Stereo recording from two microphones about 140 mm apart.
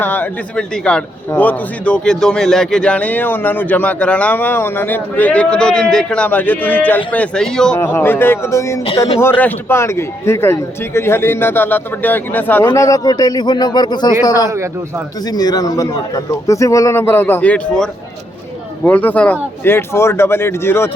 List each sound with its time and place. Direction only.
0.0 s a man's voice: 15° left (ahead or behind)
7.8 s a man's voice: 15° left (ahead or behind)
14.5 s a man's voice: 20° right (ahead or behind)
15.2 s a man's voice: 30° left (ahead or behind); by 17.8 s 10° left (ahead or behind)
18.9 s a man's voice: 10° left (ahead or behind)